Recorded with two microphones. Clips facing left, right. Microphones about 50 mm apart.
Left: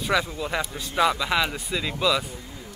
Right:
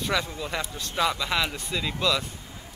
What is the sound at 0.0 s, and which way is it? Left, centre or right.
Speech, centre.